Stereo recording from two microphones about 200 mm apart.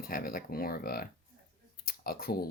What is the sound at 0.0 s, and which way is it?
Speech, 45° left (ahead or behind).